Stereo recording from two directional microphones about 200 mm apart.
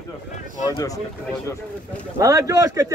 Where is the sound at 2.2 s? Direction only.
15° right (ahead or behind).